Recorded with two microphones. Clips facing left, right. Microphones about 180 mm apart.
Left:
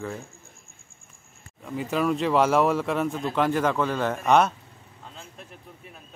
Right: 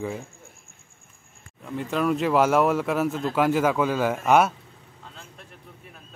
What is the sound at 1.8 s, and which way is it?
A man's voice, centre (ahead or behind).